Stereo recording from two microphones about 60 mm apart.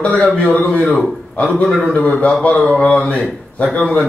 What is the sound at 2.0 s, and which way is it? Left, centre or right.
Speech, left.